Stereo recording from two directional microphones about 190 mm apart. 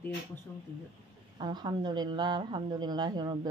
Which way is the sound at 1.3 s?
20° right (ahead or behind).